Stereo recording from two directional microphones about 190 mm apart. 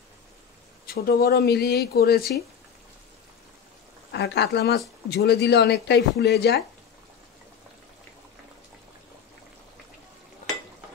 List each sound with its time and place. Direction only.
0.8 s speech: 55° left (ahead or behind)
4.1 s speech: 60° left (ahead or behind)